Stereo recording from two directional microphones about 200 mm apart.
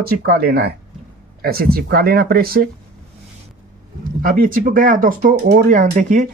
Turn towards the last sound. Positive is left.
turn(degrees=-40)  # may be behind; listen again after turning